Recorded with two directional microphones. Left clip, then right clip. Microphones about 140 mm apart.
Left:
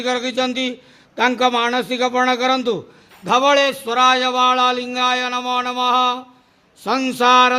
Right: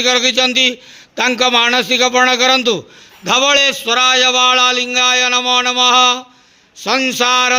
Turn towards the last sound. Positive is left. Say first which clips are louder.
# even
turn(degrees=-5)  # may be behind; listen again after turning